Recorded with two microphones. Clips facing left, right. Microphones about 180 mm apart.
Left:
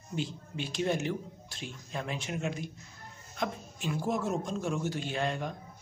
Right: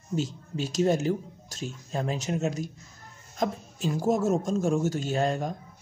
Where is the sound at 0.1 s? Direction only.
40° right (ahead or behind).